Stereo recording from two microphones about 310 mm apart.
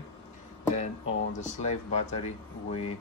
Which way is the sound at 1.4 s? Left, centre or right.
Left.